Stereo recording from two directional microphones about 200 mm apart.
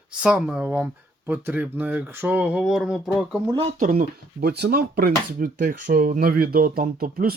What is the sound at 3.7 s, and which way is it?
Speech, 45° right (ahead or behind).